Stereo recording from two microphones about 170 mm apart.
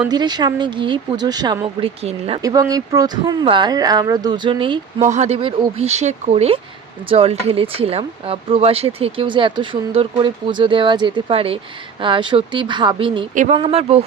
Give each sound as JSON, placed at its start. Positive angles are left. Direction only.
{"t": 0.1, "sound": "speech", "side_deg": -25}
{"t": 1.6, "sound": "speech", "side_deg": -35}
{"t": 2.4, "sound": "speech", "side_deg": -20}
{"t": 5.0, "sound": "speech", "side_deg": -45}
{"t": 13.3, "sound": "speech", "side_deg": -45}
{"t": 13.6, "sound": "speech", "side_deg": -35}